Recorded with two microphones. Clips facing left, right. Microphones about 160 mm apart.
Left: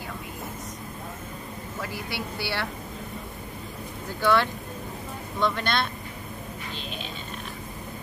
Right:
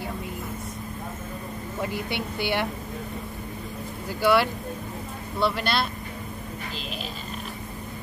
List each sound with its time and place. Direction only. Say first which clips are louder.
1.8 s a woman's voice: right 4 dB; 20° right (ahead or behind)
4.2 s speech: right 2 dB; 10° right (ahead or behind)